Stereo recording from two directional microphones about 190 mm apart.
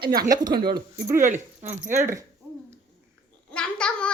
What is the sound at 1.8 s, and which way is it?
Speech, 15° right (ahead or behind).